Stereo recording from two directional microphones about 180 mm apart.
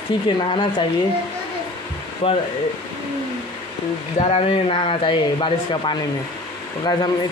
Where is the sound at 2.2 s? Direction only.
30° left (ahead or behind).